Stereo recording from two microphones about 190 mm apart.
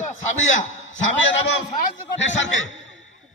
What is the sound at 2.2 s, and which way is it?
Speech, 80° left.